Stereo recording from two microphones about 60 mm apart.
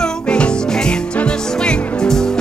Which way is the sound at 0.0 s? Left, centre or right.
Centre.